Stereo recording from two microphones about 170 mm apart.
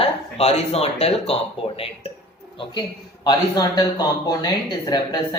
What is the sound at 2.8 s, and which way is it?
Speech, 25° left (ahead or behind).